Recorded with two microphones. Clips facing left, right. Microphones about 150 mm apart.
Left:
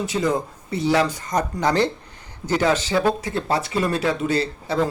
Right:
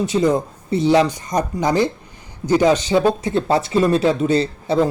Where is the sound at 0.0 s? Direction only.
20° right (ahead or behind).